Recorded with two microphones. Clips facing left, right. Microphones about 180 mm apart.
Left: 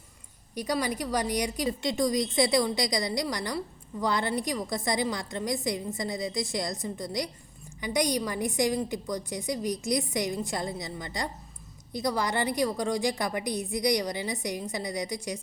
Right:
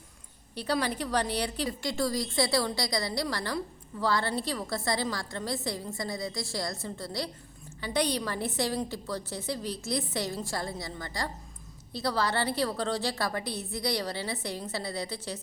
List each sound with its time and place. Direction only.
0.5 s a woman's voice: 10° left (ahead or behind)